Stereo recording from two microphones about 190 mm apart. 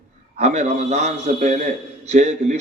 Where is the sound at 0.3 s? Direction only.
35° right (ahead or behind).